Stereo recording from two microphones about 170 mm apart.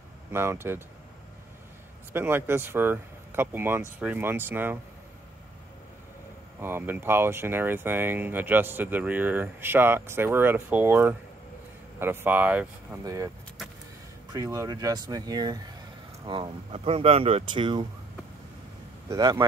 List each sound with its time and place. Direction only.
0.3 s speech: 15° right (ahead or behind)
2.1 s speech: 10° right (ahead or behind)
6.6 s speech: 15° right (ahead or behind)
14.3 s speech: 20° right (ahead or behind)
19.0 s speech: 20° right (ahead or behind)